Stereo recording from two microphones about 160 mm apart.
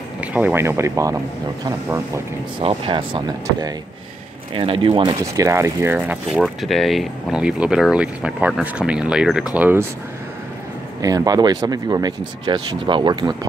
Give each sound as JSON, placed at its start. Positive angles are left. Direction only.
{"t": 0.2, "sound": "speech", "side_deg": -10}
{"t": 2.8, "sound": "speech", "side_deg": -30}
{"t": 11.0, "sound": "speech", "side_deg": -25}